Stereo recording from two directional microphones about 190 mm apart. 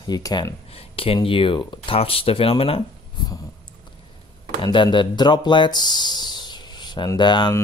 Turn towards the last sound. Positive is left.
turn(degrees=25)  # may be behind; listen again after turning